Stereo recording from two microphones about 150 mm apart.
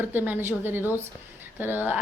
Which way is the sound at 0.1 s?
15° right (ahead or behind).